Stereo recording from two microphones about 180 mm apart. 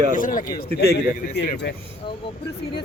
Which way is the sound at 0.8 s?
60° left (ahead or behind).